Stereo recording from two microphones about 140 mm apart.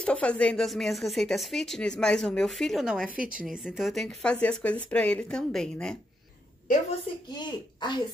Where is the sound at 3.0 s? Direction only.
85° right.